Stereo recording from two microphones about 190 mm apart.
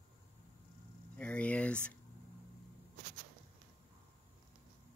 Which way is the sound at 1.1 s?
5° left (ahead or behind).